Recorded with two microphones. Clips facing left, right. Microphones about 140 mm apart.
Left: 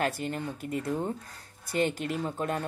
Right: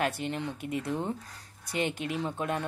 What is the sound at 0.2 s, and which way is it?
Speech, 45° left (ahead or behind).